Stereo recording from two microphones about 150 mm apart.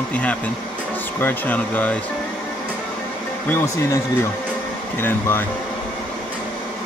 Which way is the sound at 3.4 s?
20° left (ahead or behind).